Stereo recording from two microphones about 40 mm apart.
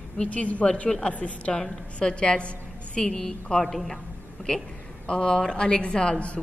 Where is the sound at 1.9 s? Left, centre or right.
Left; by 4.0 s centre.